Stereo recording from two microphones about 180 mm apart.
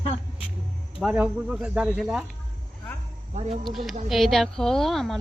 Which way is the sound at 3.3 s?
35° right (ahead or behind).